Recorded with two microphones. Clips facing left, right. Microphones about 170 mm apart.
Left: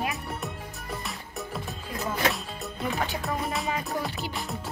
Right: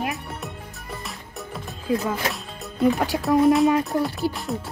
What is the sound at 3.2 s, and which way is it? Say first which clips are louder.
Speech: right 13 dB; centre (ahead or behind).